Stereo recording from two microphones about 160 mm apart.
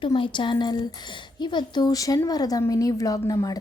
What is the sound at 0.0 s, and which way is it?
A woman's voice, 30° left (ahead or behind).